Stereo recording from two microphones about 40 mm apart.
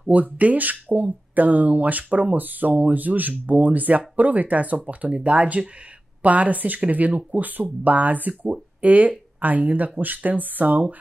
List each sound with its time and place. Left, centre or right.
0.1 s speech: right